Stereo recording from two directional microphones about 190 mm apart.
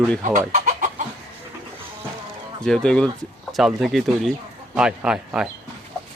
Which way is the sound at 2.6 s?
5° left (ahead or behind).